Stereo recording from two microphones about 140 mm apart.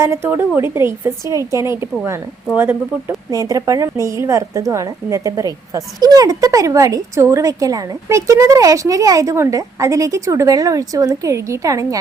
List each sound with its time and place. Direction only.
0.0 s a woman's voice: 15° right (ahead or behind)